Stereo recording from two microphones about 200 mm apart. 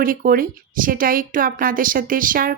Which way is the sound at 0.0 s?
45° right (ahead or behind).